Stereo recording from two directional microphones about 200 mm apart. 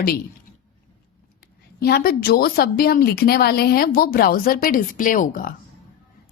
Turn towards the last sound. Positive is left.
turn(degrees=45)  # may be behind; listen again after turning